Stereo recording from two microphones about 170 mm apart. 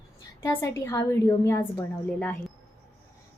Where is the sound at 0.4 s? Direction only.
15° left (ahead or behind).